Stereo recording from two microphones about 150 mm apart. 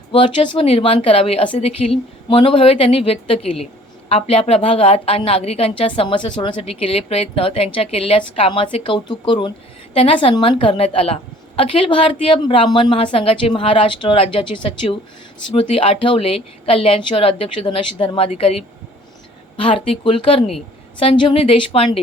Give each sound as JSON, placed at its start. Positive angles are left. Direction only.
{"t": 0.1, "sound": "a woman's voice", "side_deg": 35}